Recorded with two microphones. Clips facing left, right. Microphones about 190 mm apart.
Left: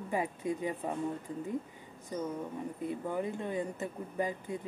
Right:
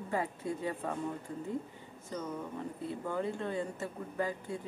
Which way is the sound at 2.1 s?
15° left (ahead or behind).